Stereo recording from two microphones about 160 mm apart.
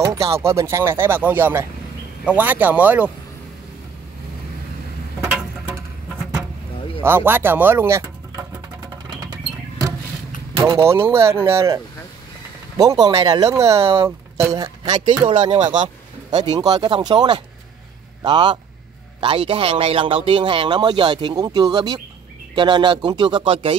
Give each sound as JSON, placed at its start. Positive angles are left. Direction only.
{"t": 0.0, "sound": "speech", "side_deg": -20}
{"t": 5.2, "sound": "a sound", "side_deg": -20}
{"t": 7.0, "sound": "speech", "side_deg": -15}
{"t": 10.5, "sound": "vehicle", "side_deg": -35}
{"t": 10.8, "sound": "speech", "side_deg": -15}
{"t": 15.6, "sound": "speech", "side_deg": -50}
{"t": 16.3, "sound": "speech", "side_deg": -25}